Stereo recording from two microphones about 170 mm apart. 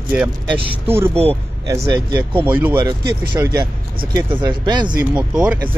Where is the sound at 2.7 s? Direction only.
30° right (ahead or behind).